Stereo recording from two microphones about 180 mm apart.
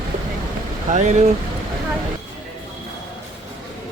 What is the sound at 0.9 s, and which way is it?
Speech, 40° right (ahead or behind).